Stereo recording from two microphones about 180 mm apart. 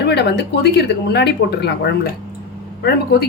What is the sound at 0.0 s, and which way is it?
Speech, 65° left (ahead or behind).